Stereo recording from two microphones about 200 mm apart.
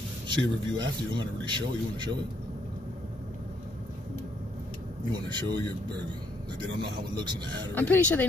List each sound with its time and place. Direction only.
0.3 s speech: 20° right (ahead or behind)
5.1 s speech: 20° right (ahead or behind)
7.2 s speech: 20° right (ahead or behind)
7.7 s speech: 10° left (ahead or behind)